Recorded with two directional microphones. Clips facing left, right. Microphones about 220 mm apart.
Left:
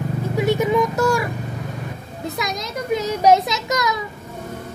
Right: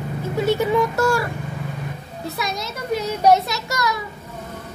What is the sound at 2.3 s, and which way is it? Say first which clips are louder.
A child's voice: left 1 dB; 15° left (ahead or behind).